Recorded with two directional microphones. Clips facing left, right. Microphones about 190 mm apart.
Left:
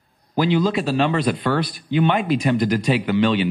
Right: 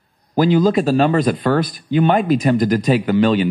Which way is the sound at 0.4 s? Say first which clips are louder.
Right 5 dB; 45° right (ahead or behind).